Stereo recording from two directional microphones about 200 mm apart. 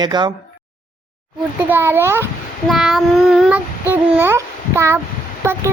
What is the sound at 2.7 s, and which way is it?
Child singing, centre (ahead or behind).